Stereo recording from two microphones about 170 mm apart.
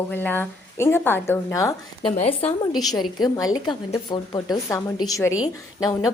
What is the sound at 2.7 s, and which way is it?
A woman's voice, 25° left (ahead or behind).